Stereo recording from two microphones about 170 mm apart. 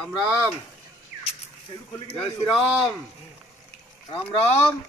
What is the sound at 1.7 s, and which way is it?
Speech, 25° left (ahead or behind).